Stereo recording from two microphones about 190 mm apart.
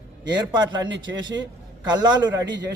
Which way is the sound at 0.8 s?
75° right (ahead or behind).